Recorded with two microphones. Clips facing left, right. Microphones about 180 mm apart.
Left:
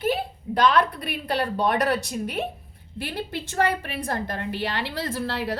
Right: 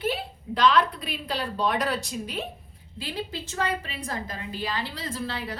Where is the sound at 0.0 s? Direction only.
45° left (ahead or behind).